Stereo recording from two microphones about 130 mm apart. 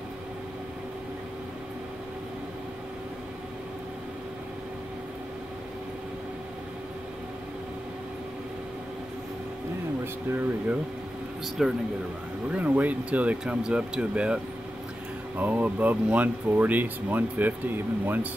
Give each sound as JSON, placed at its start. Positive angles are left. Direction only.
{"t": 10.3, "sound": "air conditioning", "side_deg": -15}
{"t": 11.4, "sound": "speech", "side_deg": 0}
{"t": 12.4, "sound": "speech", "side_deg": -10}